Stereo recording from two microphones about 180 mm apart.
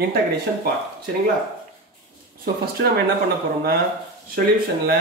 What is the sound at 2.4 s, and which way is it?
Speech, 60° right (ahead or behind).